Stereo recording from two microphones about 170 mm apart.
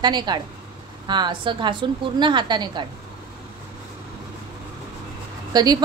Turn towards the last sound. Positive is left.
turn(degrees=-25)  # may be behind; listen again after turning